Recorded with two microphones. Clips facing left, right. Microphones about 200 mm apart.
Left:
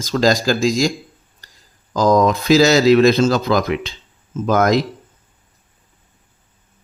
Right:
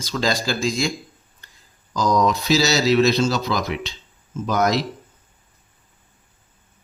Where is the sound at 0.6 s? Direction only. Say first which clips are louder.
Left 6 dB; 90° left.